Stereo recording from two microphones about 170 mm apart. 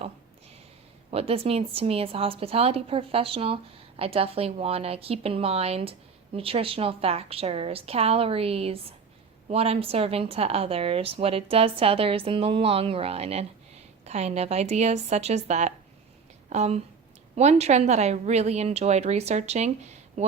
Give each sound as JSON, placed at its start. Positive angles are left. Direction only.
{"t": 1.1, "sound": "a woman's voice", "side_deg": -35}